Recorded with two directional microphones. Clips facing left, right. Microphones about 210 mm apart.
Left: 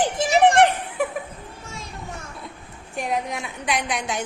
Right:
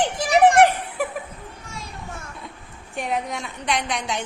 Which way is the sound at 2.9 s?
Centre (ahead or behind).